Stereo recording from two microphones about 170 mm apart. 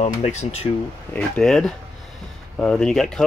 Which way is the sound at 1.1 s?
5° left (ahead or behind).